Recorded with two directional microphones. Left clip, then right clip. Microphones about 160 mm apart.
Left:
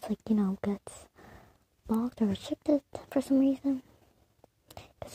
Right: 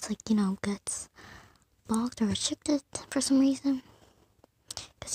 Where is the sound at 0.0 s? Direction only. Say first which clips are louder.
Right 1 dB; 5° right (ahead or behind).